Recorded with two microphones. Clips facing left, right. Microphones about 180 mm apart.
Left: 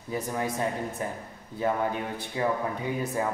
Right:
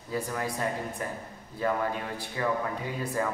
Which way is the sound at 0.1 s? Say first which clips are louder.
Left 2 dB; 20° left (ahead or behind).